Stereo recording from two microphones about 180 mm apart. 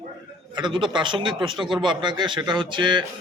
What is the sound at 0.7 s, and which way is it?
A man's voice, 25° right (ahead or behind).